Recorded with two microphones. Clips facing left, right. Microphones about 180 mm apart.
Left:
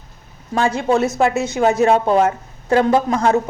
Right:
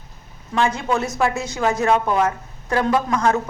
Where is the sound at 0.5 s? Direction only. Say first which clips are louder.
Left 4 dB; 30° left (ahead or behind).